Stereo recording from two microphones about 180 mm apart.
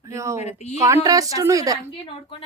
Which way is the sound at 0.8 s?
20° right (ahead or behind).